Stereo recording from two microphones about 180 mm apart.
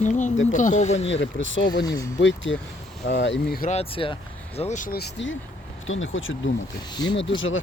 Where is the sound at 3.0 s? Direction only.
80° left.